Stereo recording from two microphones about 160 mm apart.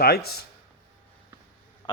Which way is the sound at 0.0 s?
75° left (ahead or behind).